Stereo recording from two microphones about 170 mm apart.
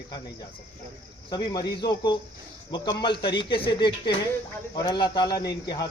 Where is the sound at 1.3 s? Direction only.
25° left (ahead or behind).